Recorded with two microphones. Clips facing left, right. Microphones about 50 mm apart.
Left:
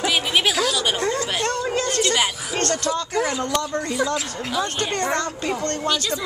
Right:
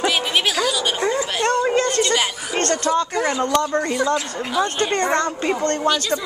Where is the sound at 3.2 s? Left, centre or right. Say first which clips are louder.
Right 3 dB; centre.